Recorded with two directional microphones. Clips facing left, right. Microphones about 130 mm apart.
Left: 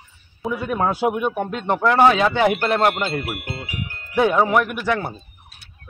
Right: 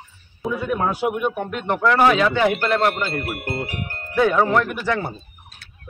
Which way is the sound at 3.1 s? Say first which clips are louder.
Right 1 dB; 45° right (ahead or behind).